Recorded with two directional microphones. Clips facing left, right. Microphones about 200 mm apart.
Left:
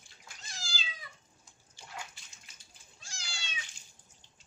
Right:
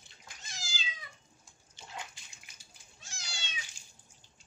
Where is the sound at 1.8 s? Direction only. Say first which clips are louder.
Right 1 dB; 20° right (ahead or behind).